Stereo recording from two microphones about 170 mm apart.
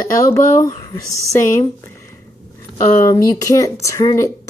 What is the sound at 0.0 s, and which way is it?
Speech, 20° left (ahead or behind).